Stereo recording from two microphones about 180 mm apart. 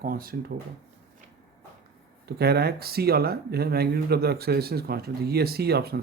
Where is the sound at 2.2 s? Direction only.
65° right (ahead or behind).